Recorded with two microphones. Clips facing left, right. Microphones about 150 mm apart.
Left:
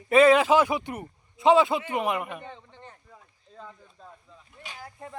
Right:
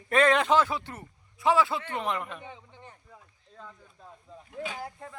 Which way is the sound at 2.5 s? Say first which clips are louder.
Left 2 dB; 10° right (ahead or behind).